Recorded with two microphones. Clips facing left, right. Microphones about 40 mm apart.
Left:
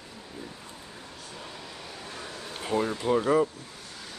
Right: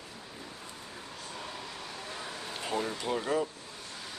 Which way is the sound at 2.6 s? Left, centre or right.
Centre.